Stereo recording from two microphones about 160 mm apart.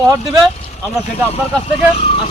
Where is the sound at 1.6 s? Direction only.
40° left (ahead or behind).